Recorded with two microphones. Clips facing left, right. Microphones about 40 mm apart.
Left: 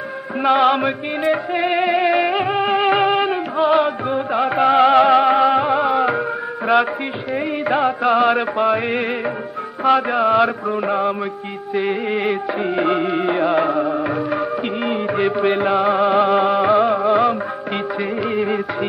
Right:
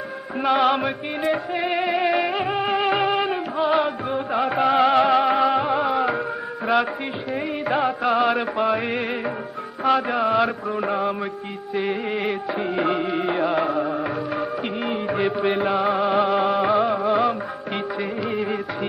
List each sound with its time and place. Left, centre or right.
0.4 s music: centre
17.0 s music of bollywood: centre
18.2 s music: centre